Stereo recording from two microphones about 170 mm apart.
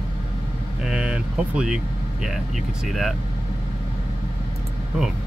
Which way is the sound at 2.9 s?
Centre (ahead or behind).